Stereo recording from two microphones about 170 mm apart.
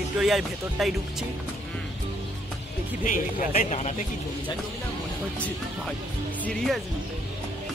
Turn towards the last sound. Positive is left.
turn(degrees=5)  # may be behind; listen again after turning